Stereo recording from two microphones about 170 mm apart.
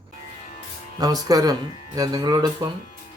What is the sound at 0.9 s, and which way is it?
Speech, 20° right (ahead or behind).